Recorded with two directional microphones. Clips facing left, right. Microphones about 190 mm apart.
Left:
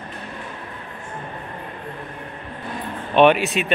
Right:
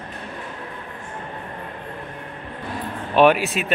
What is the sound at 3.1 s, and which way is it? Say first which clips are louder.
Speech: left 1 dB; 5° right (ahead or behind).